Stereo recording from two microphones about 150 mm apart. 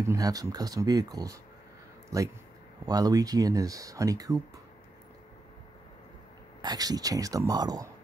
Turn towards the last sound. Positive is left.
turn(degrees=-25)  # may be behind; listen again after turning